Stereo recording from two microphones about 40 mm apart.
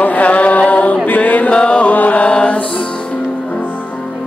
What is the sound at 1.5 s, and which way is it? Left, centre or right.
Chant, left.